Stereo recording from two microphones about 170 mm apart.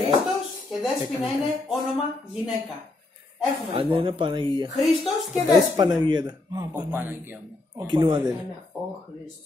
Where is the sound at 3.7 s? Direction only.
30° right (ahead or behind).